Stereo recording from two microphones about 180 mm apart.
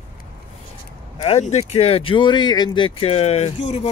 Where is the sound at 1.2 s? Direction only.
35° left (ahead or behind).